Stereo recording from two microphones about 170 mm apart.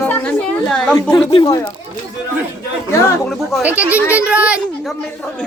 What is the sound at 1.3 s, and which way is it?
Speech, 30° left (ahead or behind).